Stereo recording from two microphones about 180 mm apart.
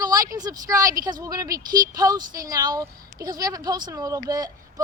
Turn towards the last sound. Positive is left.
turn(degrees=-20)  # may be behind; listen again after turning